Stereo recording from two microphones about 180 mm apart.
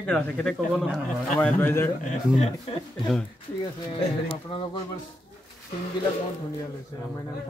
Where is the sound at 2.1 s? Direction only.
40° left (ahead or behind).